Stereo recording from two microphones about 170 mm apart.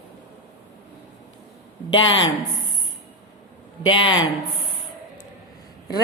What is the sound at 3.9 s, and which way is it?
Speech, 30° left (ahead or behind).